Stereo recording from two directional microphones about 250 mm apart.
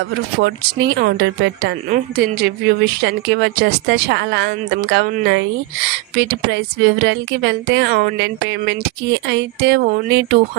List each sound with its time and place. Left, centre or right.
0.3 s a woman's voice: right